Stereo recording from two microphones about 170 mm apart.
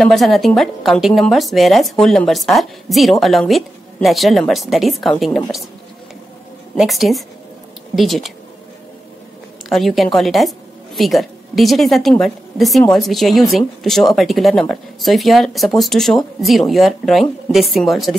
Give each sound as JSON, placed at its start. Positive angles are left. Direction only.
{"t": 0.0, "sound": "a woman's voice", "side_deg": 0}
{"t": 6.7, "sound": "a woman's voice", "side_deg": 0}
{"t": 9.7, "sound": "a woman's voice", "side_deg": 0}